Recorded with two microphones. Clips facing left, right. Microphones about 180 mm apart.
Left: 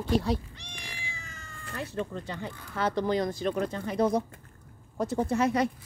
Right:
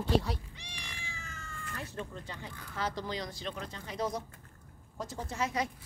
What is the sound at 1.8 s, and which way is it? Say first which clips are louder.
Speech: left 9 dB; 85° left.